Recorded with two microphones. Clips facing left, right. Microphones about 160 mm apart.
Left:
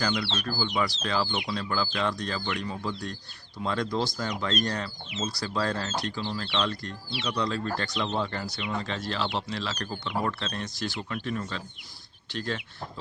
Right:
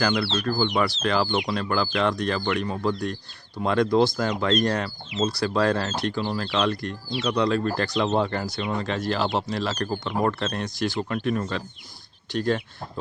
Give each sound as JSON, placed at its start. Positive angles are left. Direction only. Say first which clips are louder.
{"t": 0.0, "sound": "speech", "louder": "right 6 dB", "side_deg": -65}
{"t": 6.4, "sound": "speech", "louder": "right 5 dB", "side_deg": -45}
{"t": 7.9, "sound": "speech", "louder": "right 9 dB", "side_deg": -50}